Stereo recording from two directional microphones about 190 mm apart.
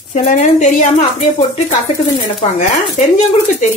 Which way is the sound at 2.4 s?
40° left (ahead or behind).